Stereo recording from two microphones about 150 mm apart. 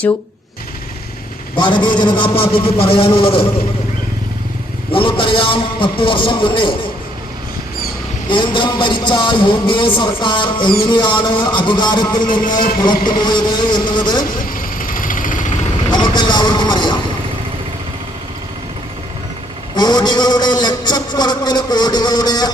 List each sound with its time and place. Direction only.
1.5 s a man's voice: 30° left (ahead or behind)
4.9 s a man's voice: 35° left (ahead or behind)
8.3 s a man's voice: 35° left (ahead or behind)
14.3 s vehicle: 70° left (ahead or behind)
15.9 s speech: 30° left (ahead or behind)
19.7 s a man's voice: 30° left (ahead or behind)